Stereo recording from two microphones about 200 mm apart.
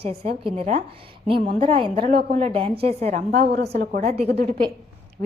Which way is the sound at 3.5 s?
55° right (ahead or behind).